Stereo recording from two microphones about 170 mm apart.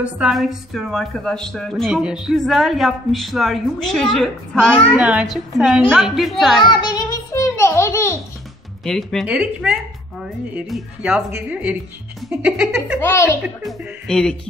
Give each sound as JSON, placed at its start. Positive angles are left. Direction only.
{"t": 0.0, "sound": "speech", "side_deg": -5}
{"t": 6.6, "sound": "child singing", "side_deg": 25}
{"t": 8.8, "sound": "speech", "side_deg": 5}
{"t": 13.0, "sound": "speech", "side_deg": 15}
{"t": 13.7, "sound": "speech", "side_deg": 0}